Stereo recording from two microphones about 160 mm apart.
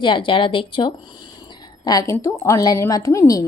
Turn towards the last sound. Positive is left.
turn(degrees=20)  # may be behind; listen again after turning